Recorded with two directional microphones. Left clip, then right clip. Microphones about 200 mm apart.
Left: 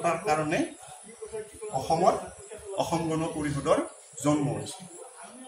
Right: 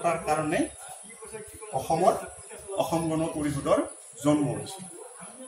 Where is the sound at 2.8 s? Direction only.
15° left (ahead or behind).